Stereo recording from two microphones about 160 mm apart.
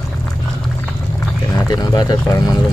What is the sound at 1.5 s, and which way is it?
Speech, 25° left (ahead or behind).